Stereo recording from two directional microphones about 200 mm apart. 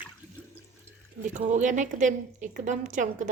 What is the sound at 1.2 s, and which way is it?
A woman's voice, 35° right (ahead or behind).